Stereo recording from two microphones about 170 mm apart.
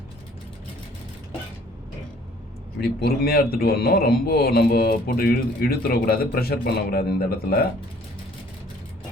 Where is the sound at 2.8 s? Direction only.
65° left (ahead or behind).